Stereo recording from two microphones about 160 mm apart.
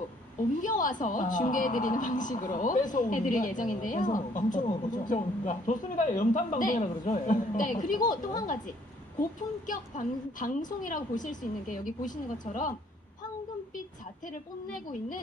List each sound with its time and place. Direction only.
0.6 s a woman's voice: 55° left (ahead or behind)
9.2 s a woman's voice: 55° left (ahead or behind)
14.2 s a woman's voice: 55° left (ahead or behind)